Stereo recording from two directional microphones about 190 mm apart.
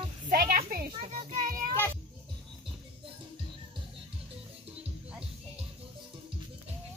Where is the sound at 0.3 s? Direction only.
50° right (ahead or behind).